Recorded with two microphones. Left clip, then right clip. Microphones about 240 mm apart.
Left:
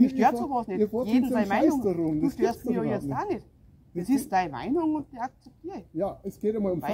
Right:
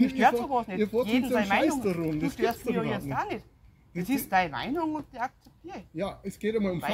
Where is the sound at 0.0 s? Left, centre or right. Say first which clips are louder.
Even; centre.